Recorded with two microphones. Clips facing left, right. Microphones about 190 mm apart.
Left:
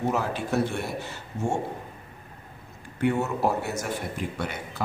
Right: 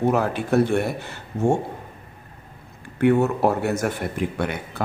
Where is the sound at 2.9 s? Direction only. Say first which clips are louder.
Right 7 dB; 60° right (ahead or behind).